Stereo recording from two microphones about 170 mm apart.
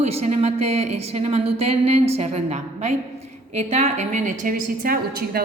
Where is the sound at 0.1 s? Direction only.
40° right (ahead or behind).